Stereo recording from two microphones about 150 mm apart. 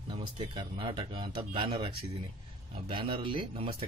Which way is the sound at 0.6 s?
35° right (ahead or behind).